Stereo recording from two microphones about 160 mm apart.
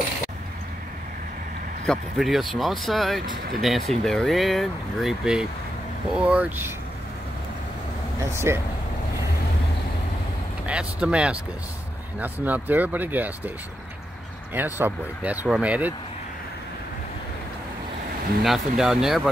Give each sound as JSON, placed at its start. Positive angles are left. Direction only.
{"t": 1.9, "sound": "speech", "side_deg": 0}
{"t": 8.2, "sound": "speech", "side_deg": -15}
{"t": 10.7, "sound": "speech", "side_deg": -5}
{"t": 14.5, "sound": "speech", "side_deg": -10}
{"t": 18.4, "sound": "speech", "side_deg": 0}